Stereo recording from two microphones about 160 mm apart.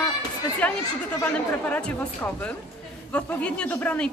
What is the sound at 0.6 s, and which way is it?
Speech, 10° left (ahead or behind).